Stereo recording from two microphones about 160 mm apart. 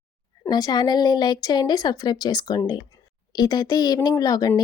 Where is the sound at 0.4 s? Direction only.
25° left (ahead or behind).